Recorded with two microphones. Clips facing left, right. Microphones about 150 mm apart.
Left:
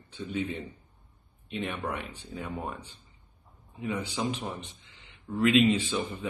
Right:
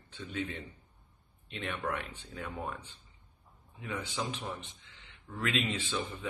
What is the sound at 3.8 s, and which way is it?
Speech, 15° left (ahead or behind).